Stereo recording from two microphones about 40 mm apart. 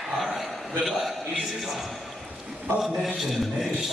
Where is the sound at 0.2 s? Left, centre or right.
Centre.